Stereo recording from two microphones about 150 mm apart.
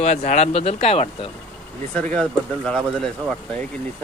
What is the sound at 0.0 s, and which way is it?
Speech, 55° left (ahead or behind).